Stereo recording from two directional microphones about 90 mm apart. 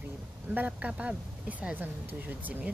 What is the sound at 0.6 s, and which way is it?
Speech, 15° right (ahead or behind).